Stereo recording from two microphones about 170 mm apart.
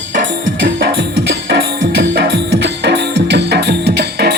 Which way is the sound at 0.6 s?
75° right (ahead or behind).